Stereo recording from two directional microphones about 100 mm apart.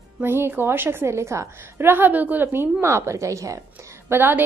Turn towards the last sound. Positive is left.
turn(degrees=-20)  # may be behind; listen again after turning